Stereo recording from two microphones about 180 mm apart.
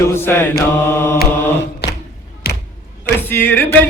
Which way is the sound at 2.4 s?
60° left (ahead or behind).